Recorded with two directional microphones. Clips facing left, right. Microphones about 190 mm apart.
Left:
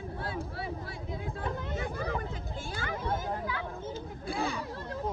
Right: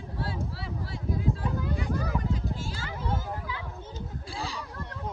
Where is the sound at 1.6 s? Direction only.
25° left (ahead or behind).